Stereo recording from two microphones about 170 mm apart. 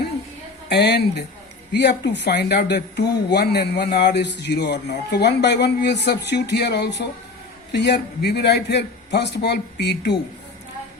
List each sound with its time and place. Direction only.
0.7 s speech: 75° left (ahead or behind)